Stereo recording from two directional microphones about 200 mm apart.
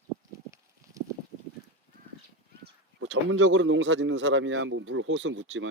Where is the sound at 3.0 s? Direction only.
70° right (ahead or behind).